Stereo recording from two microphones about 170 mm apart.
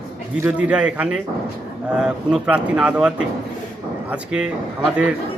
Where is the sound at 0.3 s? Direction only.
10° right (ahead or behind).